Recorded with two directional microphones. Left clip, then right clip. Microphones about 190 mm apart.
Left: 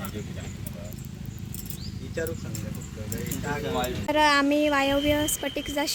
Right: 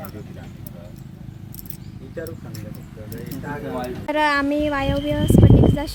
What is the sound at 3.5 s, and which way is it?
Speech, 40° right (ahead or behind).